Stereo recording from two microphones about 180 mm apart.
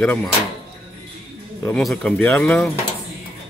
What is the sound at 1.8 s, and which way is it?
Speech, 5° left (ahead or behind).